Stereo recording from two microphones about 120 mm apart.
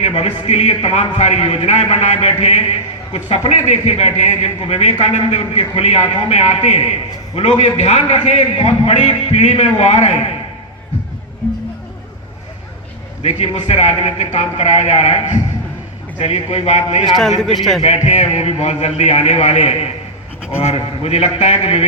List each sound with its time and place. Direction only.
0.0 s a man's voice: 60° left (ahead or behind)
5.4 s a man's voice: 55° left (ahead or behind)
13.2 s a man's voice: 65° left (ahead or behind)
17.2 s a man's voice: centre (ahead or behind)
17.8 s a man's voice: 70° left (ahead or behind)
20.6 s a man's voice: 60° left (ahead or behind)